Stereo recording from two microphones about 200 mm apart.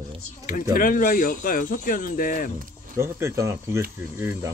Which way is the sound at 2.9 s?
15° right (ahead or behind).